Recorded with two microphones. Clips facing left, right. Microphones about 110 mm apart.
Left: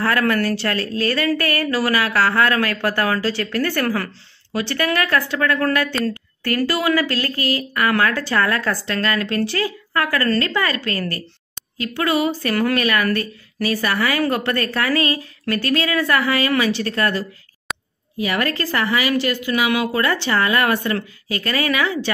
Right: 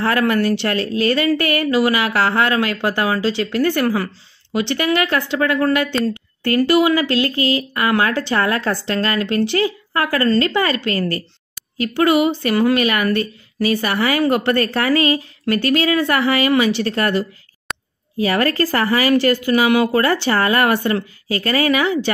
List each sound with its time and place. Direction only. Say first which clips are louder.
0.0 s speech: right 2 dB; 25° right (ahead or behind)
17.7 s a sound: even; 5° left (ahead or behind)
18.1 s a woman's voice: right 4 dB; 35° right (ahead or behind)